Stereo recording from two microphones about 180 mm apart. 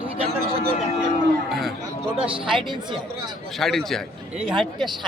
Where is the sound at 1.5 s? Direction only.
Centre (ahead or behind).